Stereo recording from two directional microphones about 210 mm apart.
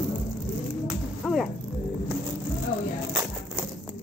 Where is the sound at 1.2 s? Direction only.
Centre (ahead or behind).